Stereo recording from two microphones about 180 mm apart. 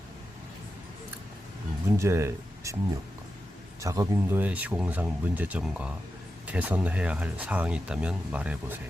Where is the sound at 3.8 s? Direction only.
15° right (ahead or behind).